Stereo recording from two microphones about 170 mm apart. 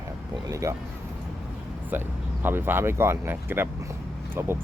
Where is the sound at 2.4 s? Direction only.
10° right (ahead or behind).